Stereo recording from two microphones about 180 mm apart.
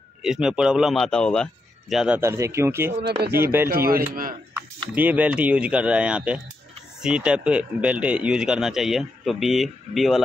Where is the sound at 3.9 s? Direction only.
55° right (ahead or behind).